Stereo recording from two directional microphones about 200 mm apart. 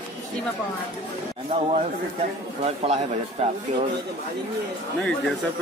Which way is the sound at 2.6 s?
30° right (ahead or behind).